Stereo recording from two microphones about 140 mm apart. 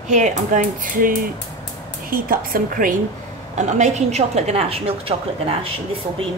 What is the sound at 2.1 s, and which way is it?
Speech, 90° right.